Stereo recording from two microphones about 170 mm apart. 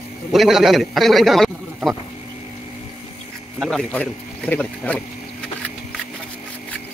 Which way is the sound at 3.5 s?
5° left (ahead or behind).